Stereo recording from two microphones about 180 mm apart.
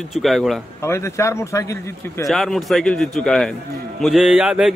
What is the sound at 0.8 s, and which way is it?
Speech, 15° left (ahead or behind).